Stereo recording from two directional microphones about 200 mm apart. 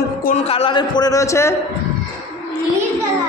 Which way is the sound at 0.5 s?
25° left (ahead or behind).